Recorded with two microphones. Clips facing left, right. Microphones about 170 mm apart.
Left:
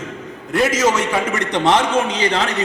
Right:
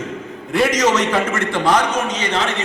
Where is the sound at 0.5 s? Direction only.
5° left (ahead or behind).